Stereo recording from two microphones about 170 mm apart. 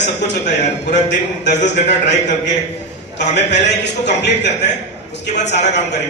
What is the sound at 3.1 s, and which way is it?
A man's voice, 90° left.